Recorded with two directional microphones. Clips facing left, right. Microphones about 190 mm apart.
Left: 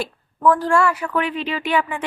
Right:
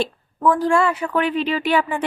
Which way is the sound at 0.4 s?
15° right (ahead or behind).